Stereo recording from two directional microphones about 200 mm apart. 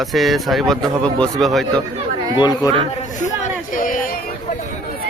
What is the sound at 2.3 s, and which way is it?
Speech, 20° left (ahead or behind).